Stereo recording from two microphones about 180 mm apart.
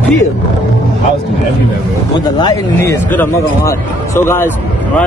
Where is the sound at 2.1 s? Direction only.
25° left (ahead or behind).